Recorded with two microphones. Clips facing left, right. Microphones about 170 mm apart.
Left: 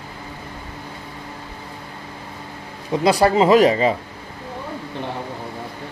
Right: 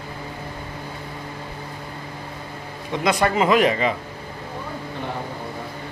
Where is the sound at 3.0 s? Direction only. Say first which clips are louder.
Left 4 dB; 35° left (ahead or behind).